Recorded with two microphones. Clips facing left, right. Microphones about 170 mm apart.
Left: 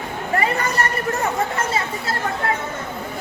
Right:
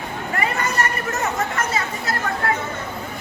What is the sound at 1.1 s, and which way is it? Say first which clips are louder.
Chatter: left 2 dB; 30° left (ahead or behind).